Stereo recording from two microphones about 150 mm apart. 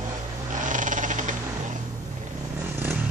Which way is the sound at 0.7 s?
60° right (ahead or behind).